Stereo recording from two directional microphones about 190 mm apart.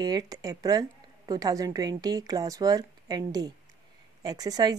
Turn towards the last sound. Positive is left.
turn(degrees=-20)  # may be behind; listen again after turning